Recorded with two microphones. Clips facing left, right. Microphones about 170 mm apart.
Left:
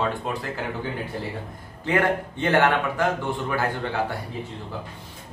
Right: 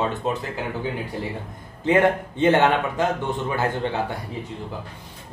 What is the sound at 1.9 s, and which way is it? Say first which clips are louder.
Speech: right 4 dB; 20° right (ahead or behind).